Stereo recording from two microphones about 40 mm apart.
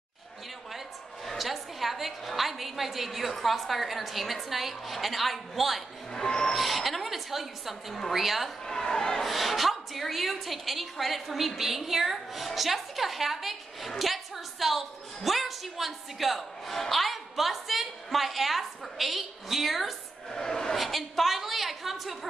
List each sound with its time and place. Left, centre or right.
0.7 s a woman's voice: centre
6.1 s speech: centre
6.5 s a woman's voice: centre
8.6 s speech: centre
9.2 s a woman's voice: centre
20.2 s speech: centre
20.7 s a woman's voice: centre